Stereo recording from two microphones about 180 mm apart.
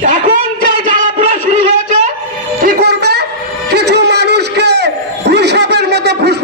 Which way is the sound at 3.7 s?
70° right (ahead or behind).